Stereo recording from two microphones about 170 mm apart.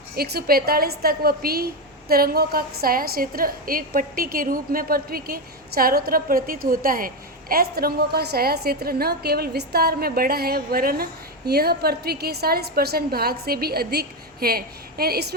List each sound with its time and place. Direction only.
0.2 s a woman's voice: 65° right (ahead or behind)